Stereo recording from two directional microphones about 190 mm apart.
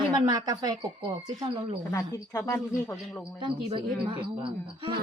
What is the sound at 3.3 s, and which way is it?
A woman's voice, 25° right (ahead or behind).